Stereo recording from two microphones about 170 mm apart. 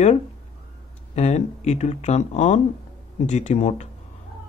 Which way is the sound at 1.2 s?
40° left (ahead or behind).